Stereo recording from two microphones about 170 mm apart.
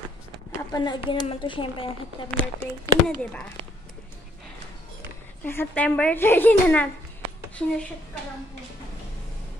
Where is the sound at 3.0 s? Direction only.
10° left (ahead or behind).